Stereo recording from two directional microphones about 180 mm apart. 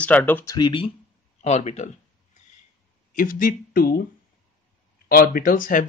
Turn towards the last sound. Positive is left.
turn(degrees=50)  # may be behind; listen again after turning